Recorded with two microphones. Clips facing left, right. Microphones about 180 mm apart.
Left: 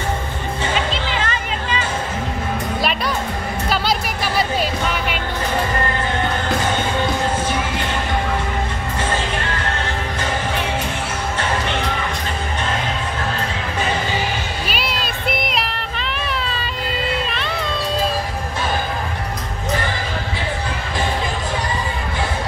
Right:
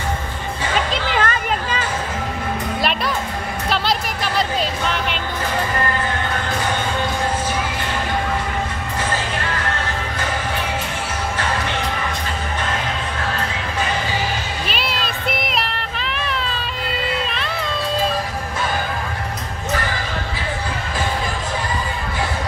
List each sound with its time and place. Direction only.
1.1 s a sound: 50° right (ahead or behind)
3.7 s music: 5° left (ahead or behind)
14.7 s child singing: centre (ahead or behind)